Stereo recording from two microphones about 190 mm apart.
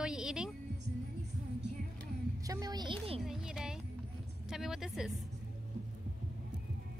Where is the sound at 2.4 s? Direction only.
20° right (ahead or behind).